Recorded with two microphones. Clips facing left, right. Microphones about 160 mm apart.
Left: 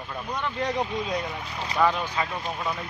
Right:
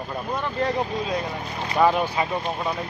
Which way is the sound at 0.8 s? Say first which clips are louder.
Right 2 dB; 35° right (ahead or behind).